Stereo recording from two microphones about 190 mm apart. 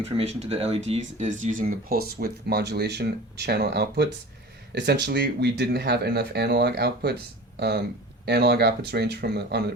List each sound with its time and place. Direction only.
0.0 s speech: 35° right (ahead or behind); by 9.6 s 60° right (ahead or behind)